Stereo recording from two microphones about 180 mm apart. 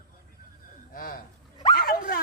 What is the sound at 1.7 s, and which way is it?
Dog, 55° left (ahead or behind).